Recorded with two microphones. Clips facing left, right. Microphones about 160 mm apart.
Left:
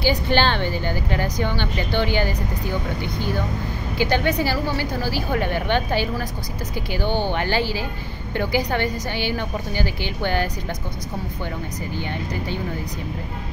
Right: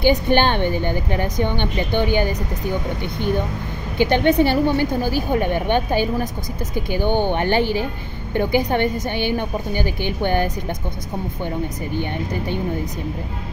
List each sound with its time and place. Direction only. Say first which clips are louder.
0.0 s a woman's voice: right 3 dB; 20° right (ahead or behind)
4.0 s a woman's voice: right 5 dB; 20° right (ahead or behind)